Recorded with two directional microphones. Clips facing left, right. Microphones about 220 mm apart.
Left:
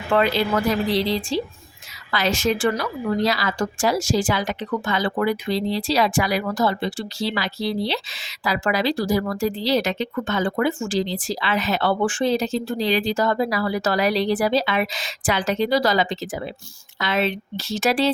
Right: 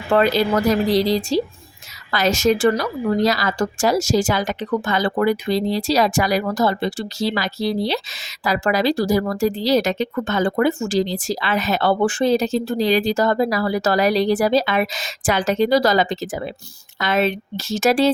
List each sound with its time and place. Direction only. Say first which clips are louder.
0.1 s a woman's voice: right 3 dB; 40° right (ahead or behind)